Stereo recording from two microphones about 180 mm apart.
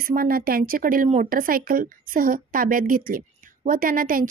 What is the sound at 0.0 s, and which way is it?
Speech, 55° right (ahead or behind).